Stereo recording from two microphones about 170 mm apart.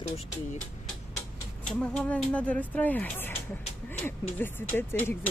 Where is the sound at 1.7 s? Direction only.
5° left (ahead or behind).